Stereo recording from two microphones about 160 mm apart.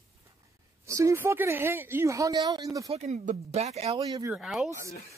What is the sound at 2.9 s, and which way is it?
Speech, 45° right (ahead or behind).